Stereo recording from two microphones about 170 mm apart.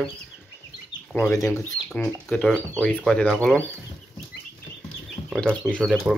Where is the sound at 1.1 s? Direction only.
10° left (ahead or behind).